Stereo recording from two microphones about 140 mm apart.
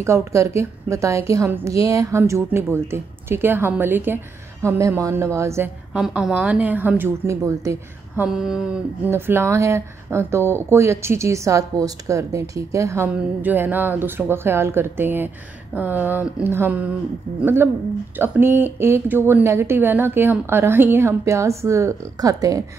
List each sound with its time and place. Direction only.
0.0 s a woman's voice: 20° right (ahead or behind)
5.9 s speech: 5° right (ahead or behind); by 8.3 s 20° right (ahead or behind)
8.3 s a sound: 5° right (ahead or behind)
9.1 s speech: 15° right (ahead or behind)